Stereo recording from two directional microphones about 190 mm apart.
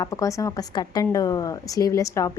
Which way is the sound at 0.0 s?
15° left (ahead or behind).